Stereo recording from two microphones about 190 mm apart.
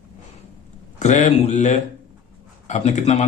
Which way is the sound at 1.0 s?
40° left (ahead or behind).